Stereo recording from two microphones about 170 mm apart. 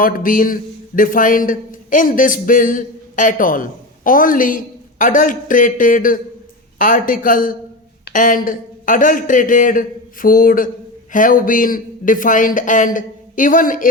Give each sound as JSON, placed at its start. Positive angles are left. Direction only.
{"t": 0.0, "sound": "a man's voice", "side_deg": 55}